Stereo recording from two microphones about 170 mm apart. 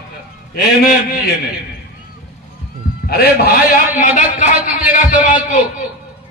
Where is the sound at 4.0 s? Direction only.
50° left (ahead or behind).